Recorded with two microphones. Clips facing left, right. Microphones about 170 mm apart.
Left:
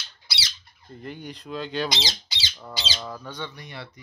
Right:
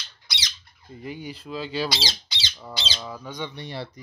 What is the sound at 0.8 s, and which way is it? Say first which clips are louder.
Speech: right 2 dB; 5° right (ahead or behind).